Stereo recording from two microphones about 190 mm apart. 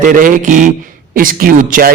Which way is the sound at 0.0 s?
45° right (ahead or behind).